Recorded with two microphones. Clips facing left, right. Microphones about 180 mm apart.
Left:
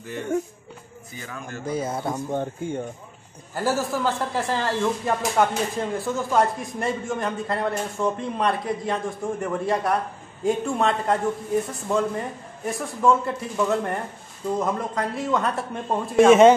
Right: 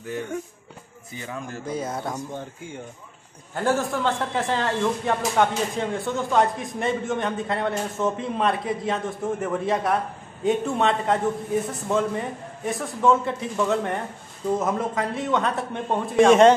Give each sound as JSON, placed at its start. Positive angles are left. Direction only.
{"t": 1.7, "sound": "a man's voice", "side_deg": 5}
{"t": 2.3, "sound": "speech", "side_deg": 55}
{"t": 3.5, "sound": "a man's voice", "side_deg": 5}